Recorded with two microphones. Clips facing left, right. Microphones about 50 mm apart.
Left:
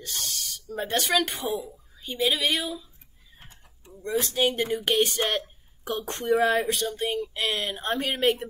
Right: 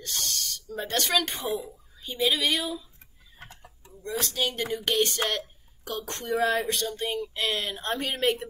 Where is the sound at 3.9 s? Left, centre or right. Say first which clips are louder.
Left 4 dB; left.